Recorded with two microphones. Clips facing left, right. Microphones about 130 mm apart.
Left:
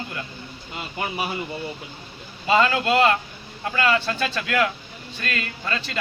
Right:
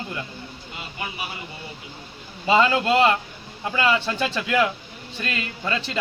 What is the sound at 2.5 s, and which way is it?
A man's voice, 20° right (ahead or behind).